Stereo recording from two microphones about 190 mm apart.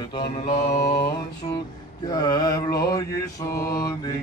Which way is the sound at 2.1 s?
20° left (ahead or behind).